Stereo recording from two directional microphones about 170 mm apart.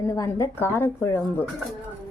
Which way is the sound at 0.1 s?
15° left (ahead or behind).